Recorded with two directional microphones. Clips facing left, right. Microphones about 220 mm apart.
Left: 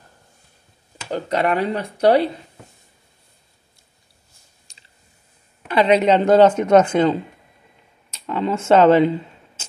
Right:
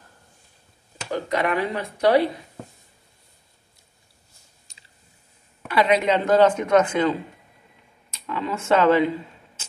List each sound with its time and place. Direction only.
1.1 s speech: 35° left (ahead or behind)
5.7 s a woman's voice: 25° left (ahead or behind)